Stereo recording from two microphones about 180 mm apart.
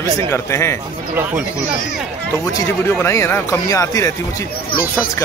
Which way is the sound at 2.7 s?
15° left (ahead or behind).